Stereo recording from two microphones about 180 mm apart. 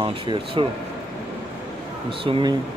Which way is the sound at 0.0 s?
30° right (ahead or behind).